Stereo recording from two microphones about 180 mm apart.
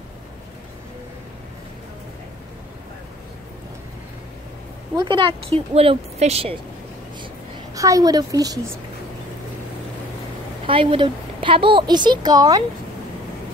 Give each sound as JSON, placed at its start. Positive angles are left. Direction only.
{"t": 4.9, "sound": "speech", "side_deg": -25}
{"t": 7.7, "sound": "a woman's voice", "side_deg": -20}
{"t": 10.7, "sound": "a woman's voice", "side_deg": -30}